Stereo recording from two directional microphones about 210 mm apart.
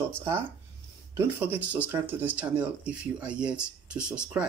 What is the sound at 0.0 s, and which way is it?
Speech, 10° right (ahead or behind).